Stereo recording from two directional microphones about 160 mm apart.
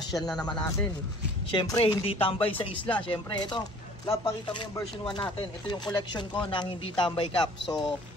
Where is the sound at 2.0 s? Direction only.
35° left (ahead or behind).